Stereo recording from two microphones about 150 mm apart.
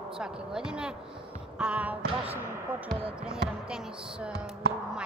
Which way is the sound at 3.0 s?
5° right (ahead or behind).